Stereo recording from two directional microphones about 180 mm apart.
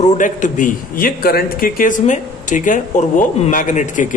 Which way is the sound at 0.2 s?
45° left (ahead or behind).